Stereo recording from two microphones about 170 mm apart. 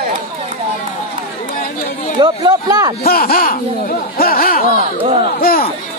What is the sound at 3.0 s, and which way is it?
Speech, 60° left (ahead or behind).